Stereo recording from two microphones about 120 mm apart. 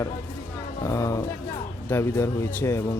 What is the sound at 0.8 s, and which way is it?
Speech, 25° left (ahead or behind).